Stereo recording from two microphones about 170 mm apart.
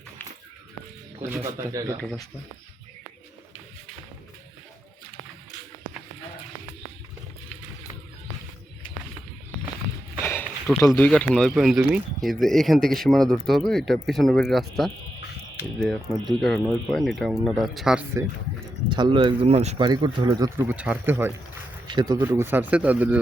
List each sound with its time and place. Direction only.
1.2 s speech: 15° right (ahead or behind)
10.4 s a sound: centre (ahead or behind)
10.8 s speech: 10° left (ahead or behind)
16.1 s speech: 25° right (ahead or behind)
16.4 s speech: 5° left (ahead or behind)
18.9 s speech: 25° right (ahead or behind)
19.9 s speech: 25° right (ahead or behind)
20.7 s speech: 10° right (ahead or behind)
21.8 s speech: 25° right (ahead or behind)
22.2 s speech: 15° right (ahead or behind)